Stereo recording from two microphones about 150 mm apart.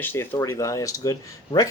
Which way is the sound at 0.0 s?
15° left (ahead or behind).